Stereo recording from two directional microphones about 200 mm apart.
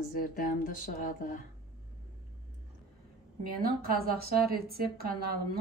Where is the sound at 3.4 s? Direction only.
50° right (ahead or behind).